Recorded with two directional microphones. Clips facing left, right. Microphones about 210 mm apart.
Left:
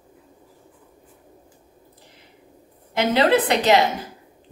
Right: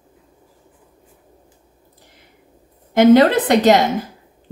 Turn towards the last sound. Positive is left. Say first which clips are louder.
# right 4 dB
turn(degrees=-45)  # may be behind; listen again after turning